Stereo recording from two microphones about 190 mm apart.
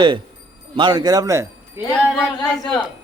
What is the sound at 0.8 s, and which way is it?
A man's voice, 25° right (ahead or behind).